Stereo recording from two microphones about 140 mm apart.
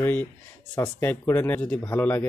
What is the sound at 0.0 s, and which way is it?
Speech, 15° left (ahead or behind).